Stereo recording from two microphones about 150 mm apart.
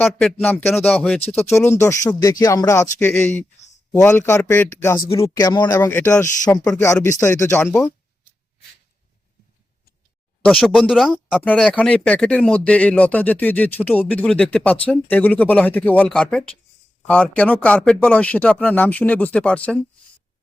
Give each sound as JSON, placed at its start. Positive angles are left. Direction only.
{"t": 0.0, "sound": "speech", "side_deg": 5}
{"t": 1.2, "sound": "speech", "side_deg": 45}
{"t": 1.5, "sound": "speech", "side_deg": 20}
{"t": 3.0, "sound": "speech", "side_deg": 10}
{"t": 10.4, "sound": "speech", "side_deg": 5}